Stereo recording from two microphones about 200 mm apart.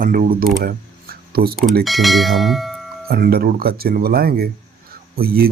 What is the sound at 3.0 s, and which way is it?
Speech, 50° right (ahead or behind).